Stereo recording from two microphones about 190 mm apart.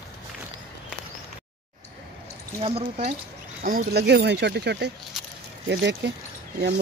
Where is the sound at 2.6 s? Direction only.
30° right (ahead or behind).